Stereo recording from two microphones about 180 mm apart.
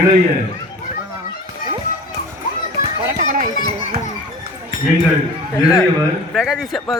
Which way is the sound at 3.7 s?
35° right (ahead or behind).